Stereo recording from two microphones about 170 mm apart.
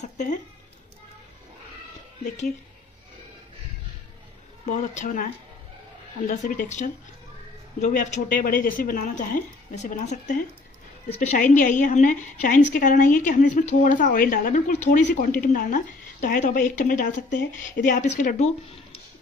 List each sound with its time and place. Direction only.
0.0 s speech: 45° left (ahead or behind)
2.2 s a woman's voice: 45° left (ahead or behind)
4.6 s a woman's voice: 50° left (ahead or behind)